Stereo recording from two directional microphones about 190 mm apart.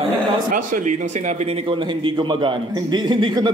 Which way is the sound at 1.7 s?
25° right (ahead or behind).